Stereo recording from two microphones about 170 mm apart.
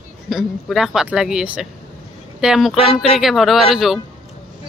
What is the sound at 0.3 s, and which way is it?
Speech, centre (ahead or behind).